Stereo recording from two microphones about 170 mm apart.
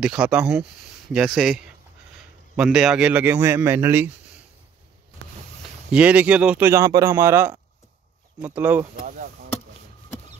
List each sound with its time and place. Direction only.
0.0 s a man's voice: 5° right (ahead or behind)
5.9 s a man's voice: 5° right (ahead or behind)
6.7 s a man's voice: 20° right (ahead or behind)
9.0 s speech: 55° right (ahead or behind)